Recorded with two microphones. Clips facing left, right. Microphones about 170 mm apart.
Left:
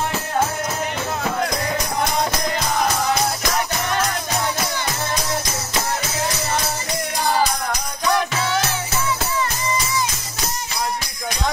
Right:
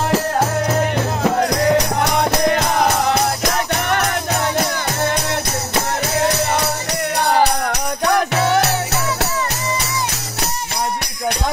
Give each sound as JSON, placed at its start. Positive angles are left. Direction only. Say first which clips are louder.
{"t": 1.7, "sound": "music", "louder": "right 7 dB", "side_deg": -70}
{"t": 6.1, "sound": "music", "louder": "right 9 dB", "side_deg": -65}